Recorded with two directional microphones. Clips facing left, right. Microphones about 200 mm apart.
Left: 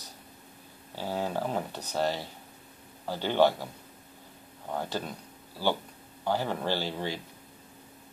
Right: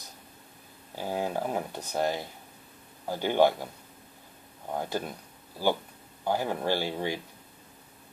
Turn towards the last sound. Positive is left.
turn(degrees=-15)  # may be behind; listen again after turning